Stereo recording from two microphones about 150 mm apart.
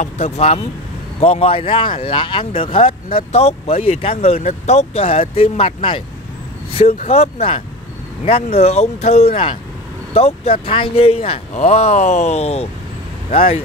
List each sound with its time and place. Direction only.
0.0 s speech: 45° left (ahead or behind)